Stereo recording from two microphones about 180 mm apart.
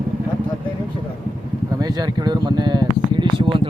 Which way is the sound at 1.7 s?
20° right (ahead or behind).